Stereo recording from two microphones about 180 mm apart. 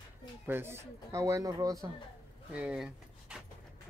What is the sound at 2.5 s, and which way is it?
Speech, 5° right (ahead or behind).